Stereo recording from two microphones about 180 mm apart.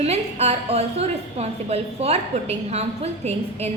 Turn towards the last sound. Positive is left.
turn(degrees=-35)  # may be behind; listen again after turning